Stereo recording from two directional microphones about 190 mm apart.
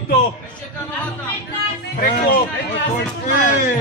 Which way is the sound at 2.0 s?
50° left (ahead or behind).